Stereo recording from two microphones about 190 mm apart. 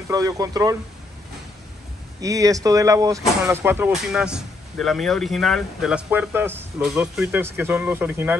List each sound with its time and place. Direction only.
0.1 s speech: 20° right (ahead or behind)
2.2 s speech: 15° right (ahead or behind)